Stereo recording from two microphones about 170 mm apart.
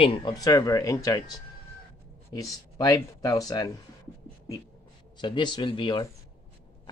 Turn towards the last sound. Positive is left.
turn(degrees=30)  # may be behind; listen again after turning